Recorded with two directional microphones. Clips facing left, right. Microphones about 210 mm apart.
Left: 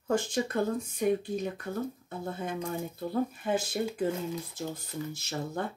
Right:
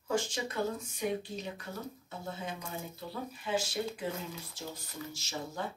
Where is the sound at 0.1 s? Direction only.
55° left (ahead or behind).